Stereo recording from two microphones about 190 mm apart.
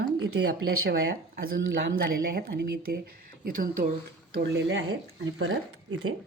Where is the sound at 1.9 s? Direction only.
50° right (ahead or behind).